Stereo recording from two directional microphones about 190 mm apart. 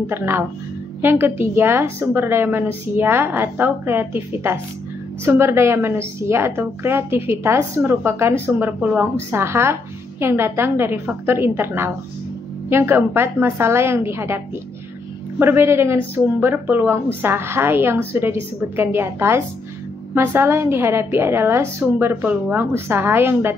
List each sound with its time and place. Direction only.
0.0 s a woman's voice: 10° right (ahead or behind)